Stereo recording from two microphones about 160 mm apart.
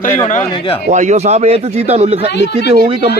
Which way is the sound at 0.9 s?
50° right (ahead or behind).